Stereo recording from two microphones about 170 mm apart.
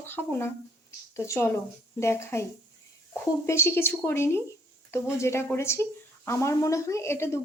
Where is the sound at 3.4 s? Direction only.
15° left (ahead or behind).